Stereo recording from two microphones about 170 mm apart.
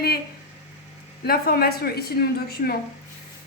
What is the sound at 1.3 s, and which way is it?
A woman's voice, 65° left (ahead or behind).